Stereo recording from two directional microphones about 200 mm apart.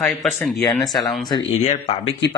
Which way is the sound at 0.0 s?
Centre (ahead or behind).